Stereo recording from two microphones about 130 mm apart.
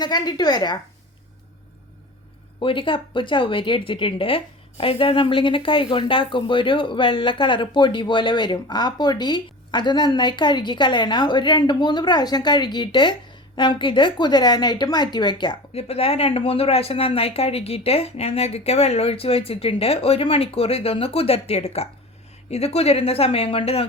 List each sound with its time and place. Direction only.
0.0 s speech: 35° left (ahead or behind)
2.6 s speech: 40° left (ahead or behind)
15.7 s speech: 50° left (ahead or behind)